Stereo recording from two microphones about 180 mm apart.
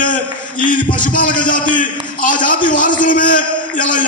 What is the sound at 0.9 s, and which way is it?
Speech, 50° left (ahead or behind).